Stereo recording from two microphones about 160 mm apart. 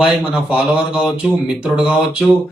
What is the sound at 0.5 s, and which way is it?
A man's voice, 5° right (ahead or behind).